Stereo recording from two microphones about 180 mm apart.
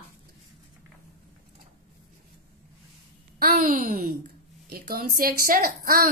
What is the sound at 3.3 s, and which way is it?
A woman's voice, 55° right (ahead or behind).